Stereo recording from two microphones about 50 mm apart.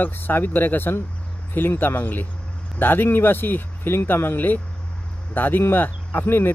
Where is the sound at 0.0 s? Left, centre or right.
Left.